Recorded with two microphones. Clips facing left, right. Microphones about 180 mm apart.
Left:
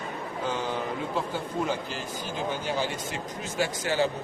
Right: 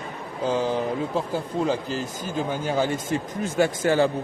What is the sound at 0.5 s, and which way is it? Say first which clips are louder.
A man's voice: right 9 dB; 35° right (ahead or behind).